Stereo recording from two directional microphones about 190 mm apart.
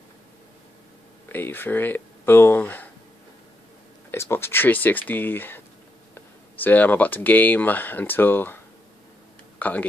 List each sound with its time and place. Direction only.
1.3 s speech: 10° left (ahead or behind)
4.1 s speech: 15° left (ahead or behind)
6.6 s speech: 10° left (ahead or behind)
9.6 s speech: 10° left (ahead or behind)